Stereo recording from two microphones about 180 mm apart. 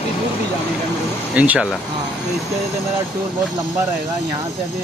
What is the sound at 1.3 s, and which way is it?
Speech, 5° right (ahead or behind).